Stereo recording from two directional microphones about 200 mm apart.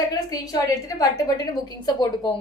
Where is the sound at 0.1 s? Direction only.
20° left (ahead or behind).